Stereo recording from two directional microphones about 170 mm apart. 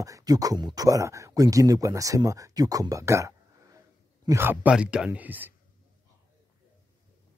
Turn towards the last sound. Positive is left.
turn(degrees=-10)  # may be behind; listen again after turning